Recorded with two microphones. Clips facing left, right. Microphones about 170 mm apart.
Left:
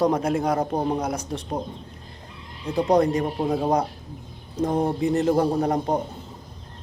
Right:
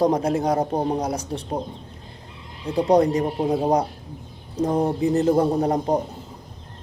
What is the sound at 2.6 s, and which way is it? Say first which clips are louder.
Speech: right 2 dB; 35° right (ahead or behind).